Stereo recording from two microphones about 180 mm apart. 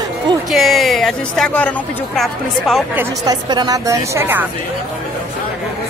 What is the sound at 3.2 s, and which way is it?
A woman's voice, 20° right (ahead or behind).